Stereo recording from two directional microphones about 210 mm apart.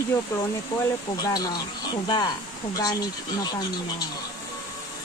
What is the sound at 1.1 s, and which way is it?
Speech, 20° left (ahead or behind).